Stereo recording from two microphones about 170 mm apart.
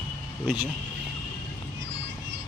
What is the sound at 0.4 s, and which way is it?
Speech, 10° right (ahead or behind).